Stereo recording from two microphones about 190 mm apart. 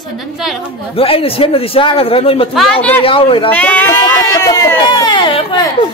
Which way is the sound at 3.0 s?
30° left (ahead or behind).